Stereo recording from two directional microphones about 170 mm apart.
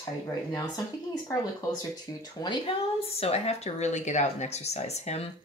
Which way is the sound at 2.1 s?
20° left (ahead or behind).